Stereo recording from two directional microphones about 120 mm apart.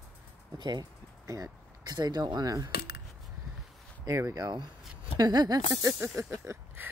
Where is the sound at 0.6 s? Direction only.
35° right (ahead or behind).